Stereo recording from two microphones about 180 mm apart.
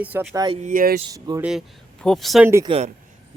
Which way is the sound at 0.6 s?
50° right (ahead or behind).